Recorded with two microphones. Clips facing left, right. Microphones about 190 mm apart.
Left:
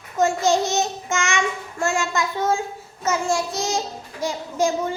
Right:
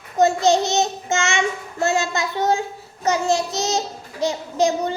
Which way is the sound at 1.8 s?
35° right (ahead or behind).